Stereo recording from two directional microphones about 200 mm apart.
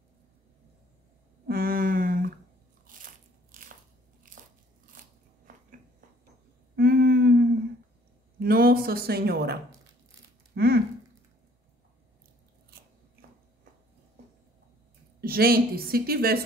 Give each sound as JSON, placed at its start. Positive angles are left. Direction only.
{"t": 1.5, "sound": "a sound", "side_deg": -50}
{"t": 4.4, "sound": "crunch", "side_deg": -40}
{"t": 6.8, "sound": "humming", "side_deg": -50}
{"t": 8.4, "sound": "speech", "side_deg": -50}
{"t": 10.5, "sound": "a sound", "side_deg": -50}
{"t": 15.1, "sound": "speech", "side_deg": -50}